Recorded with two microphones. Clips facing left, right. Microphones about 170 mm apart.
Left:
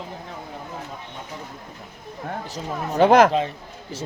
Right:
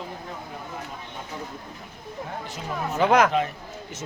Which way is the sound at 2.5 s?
35° left (ahead or behind).